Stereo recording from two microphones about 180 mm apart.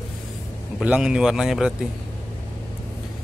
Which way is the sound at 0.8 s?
5° right (ahead or behind).